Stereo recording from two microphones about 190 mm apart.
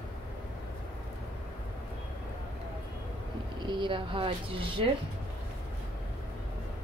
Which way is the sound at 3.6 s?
25° right (ahead or behind).